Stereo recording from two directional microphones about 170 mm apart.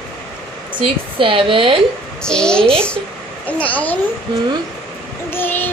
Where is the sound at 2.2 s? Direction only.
5° left (ahead or behind).